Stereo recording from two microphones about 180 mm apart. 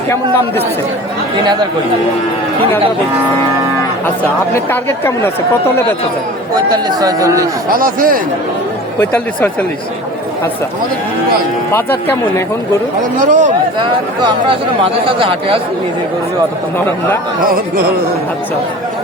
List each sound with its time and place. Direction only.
0.1 s speech: 15° left (ahead or behind)
4.5 s speech: 15° left (ahead or behind)
6.5 s a man's voice: 25° right (ahead or behind)
7.7 s speech: 50° right (ahead or behind)
9.0 s speech: 10° left (ahead or behind)
11.7 s speech: 10° left (ahead or behind)
13.0 s speech: 45° right (ahead or behind)
15.0 s speech: 30° right (ahead or behind)